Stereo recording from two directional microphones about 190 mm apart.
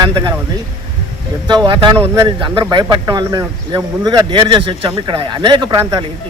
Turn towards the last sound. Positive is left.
turn(degrees=-15)  # may be behind; listen again after turning